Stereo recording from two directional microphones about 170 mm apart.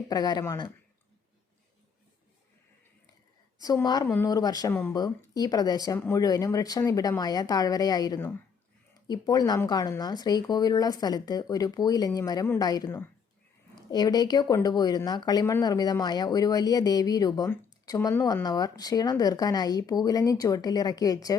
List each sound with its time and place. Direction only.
0.1 s speech: 25° left (ahead or behind)
3.6 s speech: 20° left (ahead or behind)